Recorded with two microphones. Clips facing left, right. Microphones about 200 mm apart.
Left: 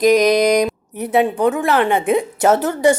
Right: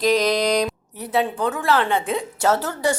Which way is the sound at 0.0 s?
15° left (ahead or behind).